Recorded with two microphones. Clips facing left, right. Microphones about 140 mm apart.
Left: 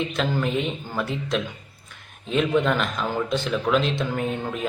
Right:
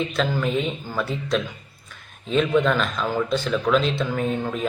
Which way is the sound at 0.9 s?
15° left (ahead or behind).